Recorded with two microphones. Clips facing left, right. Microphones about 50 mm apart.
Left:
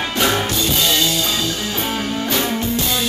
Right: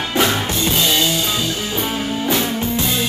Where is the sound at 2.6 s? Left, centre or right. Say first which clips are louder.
Even; right.